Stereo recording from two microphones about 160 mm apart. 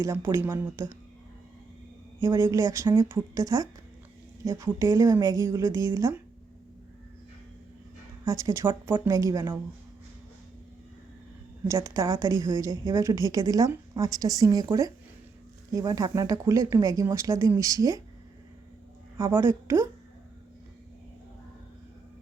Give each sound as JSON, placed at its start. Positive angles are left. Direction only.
{"t": 0.0, "sound": "speech", "side_deg": -15}
{"t": 2.4, "sound": "speech", "side_deg": -20}
{"t": 8.2, "sound": "speech", "side_deg": -20}
{"t": 11.7, "sound": "speech", "side_deg": -20}
{"t": 19.1, "sound": "speech", "side_deg": -15}